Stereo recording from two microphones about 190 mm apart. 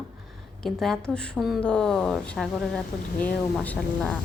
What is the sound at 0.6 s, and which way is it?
Speech, centre (ahead or behind).